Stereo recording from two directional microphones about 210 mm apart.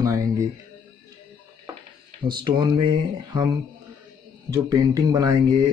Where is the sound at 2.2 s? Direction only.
20° right (ahead or behind).